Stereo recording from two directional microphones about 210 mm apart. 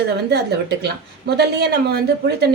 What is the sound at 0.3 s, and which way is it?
A woman's voice, 55° right (ahead or behind).